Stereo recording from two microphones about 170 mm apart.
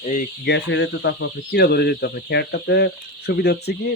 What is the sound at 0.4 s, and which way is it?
Speech, 90° left.